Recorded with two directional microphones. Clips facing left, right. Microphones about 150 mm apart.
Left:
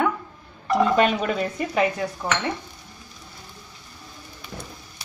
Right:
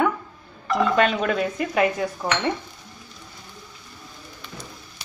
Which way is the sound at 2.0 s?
20° right (ahead or behind).